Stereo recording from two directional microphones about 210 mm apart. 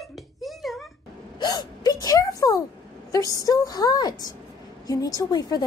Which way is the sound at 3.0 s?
15° left (ahead or behind).